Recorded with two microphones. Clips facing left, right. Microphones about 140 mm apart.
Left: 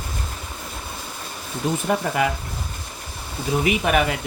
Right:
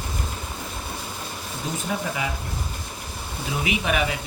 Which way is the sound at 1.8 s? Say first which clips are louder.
Left 6 dB; 55° left (ahead or behind).